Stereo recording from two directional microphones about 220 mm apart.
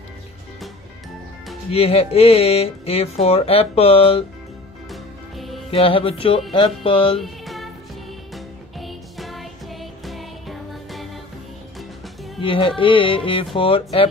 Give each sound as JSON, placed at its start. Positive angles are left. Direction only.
{"t": 1.7, "sound": "speech", "side_deg": 25}
{"t": 4.9, "sound": "music", "side_deg": 0}
{"t": 5.7, "sound": "speech", "side_deg": 25}
{"t": 7.2, "sound": "music", "side_deg": 0}
{"t": 12.4, "sound": "speech", "side_deg": 25}